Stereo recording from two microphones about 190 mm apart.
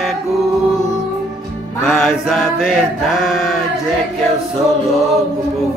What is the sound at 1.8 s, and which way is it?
Mantra, centre (ahead or behind).